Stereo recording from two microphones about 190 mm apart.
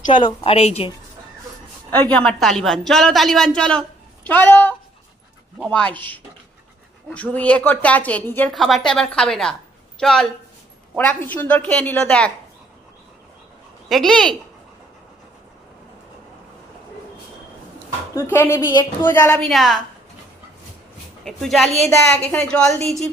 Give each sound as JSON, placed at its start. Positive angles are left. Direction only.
{"t": 0.1, "sound": "a woman's voice", "side_deg": 25}
{"t": 1.9, "sound": "a woman's voice", "side_deg": 5}
{"t": 7.1, "sound": "a woman's voice", "side_deg": 5}
{"t": 13.8, "sound": "a woman's voice", "side_deg": 0}
{"t": 18.1, "sound": "a woman's voice", "side_deg": 10}
{"t": 19.4, "sound": "a woman's voice", "side_deg": 0}
{"t": 21.2, "sound": "a woman's voice", "side_deg": 0}